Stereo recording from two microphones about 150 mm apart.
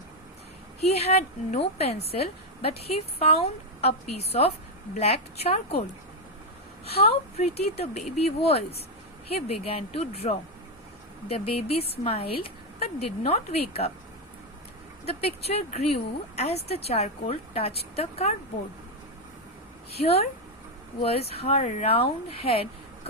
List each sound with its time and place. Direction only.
0.8 s a woman's voice: 45° left (ahead or behind)
6.8 s a woman's voice: 40° left (ahead or behind)
15.0 s a woman's voice: 45° left (ahead or behind)
19.9 s a woman's voice: 40° left (ahead or behind)